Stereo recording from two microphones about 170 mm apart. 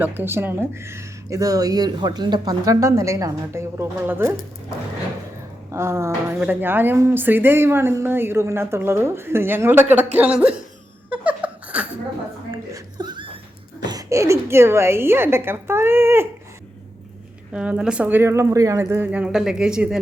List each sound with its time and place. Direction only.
0.0 s speech: 10° right (ahead or behind)
5.7 s speech: 15° right (ahead or behind)
11.1 s a sound: 10° right (ahead or behind)
12.7 s a sound: 25° right (ahead or behind)
13.8 s speech: 20° right (ahead or behind)
17.5 s speech: 5° right (ahead or behind)